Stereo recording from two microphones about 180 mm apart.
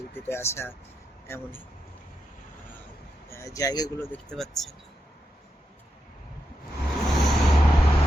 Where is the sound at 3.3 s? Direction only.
20° left (ahead or behind).